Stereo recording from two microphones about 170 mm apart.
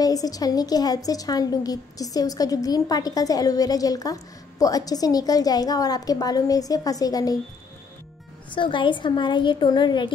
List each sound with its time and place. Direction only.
0.0 s a woman's voice: 20° left (ahead or behind)
8.5 s a woman's voice: 30° left (ahead or behind)